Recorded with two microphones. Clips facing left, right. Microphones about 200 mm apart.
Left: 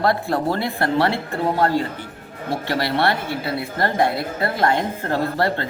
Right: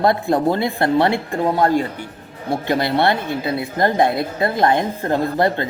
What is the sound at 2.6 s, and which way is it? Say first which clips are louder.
A woman's voice: right 3 dB; 20° right (ahead or behind).